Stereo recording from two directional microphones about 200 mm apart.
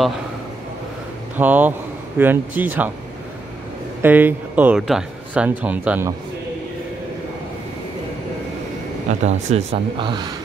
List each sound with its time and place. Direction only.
1.3 s speech: 10° right (ahead or behind)
4.0 s speech: 10° right (ahead or behind)
9.2 s speech: 35° right (ahead or behind)